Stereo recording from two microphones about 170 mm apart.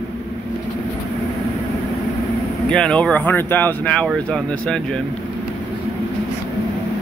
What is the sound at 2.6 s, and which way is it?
Speech, 5° left (ahead or behind).